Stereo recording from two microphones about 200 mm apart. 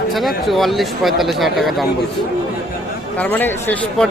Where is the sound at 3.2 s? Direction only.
10° left (ahead or behind).